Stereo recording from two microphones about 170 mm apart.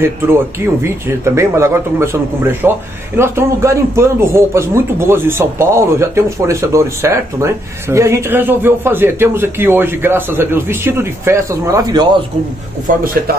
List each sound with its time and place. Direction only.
0.3 s speech: 15° right (ahead or behind)
12.9 s a man's voice: 50° right (ahead or behind)
13.3 s speech: 65° right (ahead or behind)